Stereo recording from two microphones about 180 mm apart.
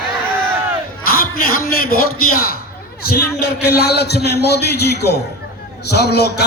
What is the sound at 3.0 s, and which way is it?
A man's voice, 60° left (ahead or behind).